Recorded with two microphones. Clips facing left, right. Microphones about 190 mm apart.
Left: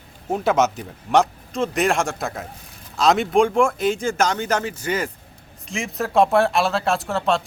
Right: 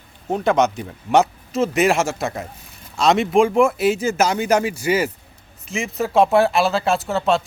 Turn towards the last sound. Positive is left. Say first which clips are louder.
# right 2 dB
turn(degrees=0)  # may be behind; listen again after turning